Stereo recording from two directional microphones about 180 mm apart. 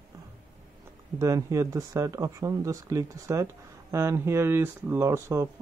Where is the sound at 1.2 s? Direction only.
20° right (ahead or behind).